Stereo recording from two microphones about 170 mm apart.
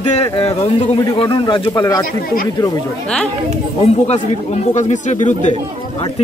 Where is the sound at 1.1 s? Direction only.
25° left (ahead or behind).